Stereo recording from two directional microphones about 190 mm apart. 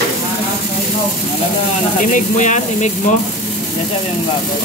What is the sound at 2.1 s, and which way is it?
Speech, 40° left (ahead or behind).